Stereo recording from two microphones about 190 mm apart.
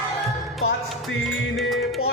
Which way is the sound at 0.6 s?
90° left.